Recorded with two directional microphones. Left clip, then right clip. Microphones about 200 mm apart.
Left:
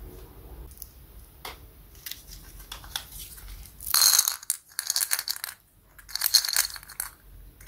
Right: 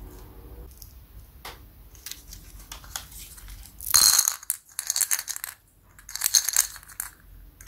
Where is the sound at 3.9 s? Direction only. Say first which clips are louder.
Right 2 dB; centre (ahead or behind).